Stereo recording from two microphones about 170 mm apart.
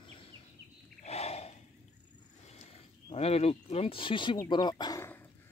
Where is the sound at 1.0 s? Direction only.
40° left (ahead or behind).